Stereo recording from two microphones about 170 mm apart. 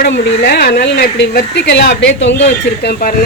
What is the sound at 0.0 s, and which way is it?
Speech, 70° left (ahead or behind).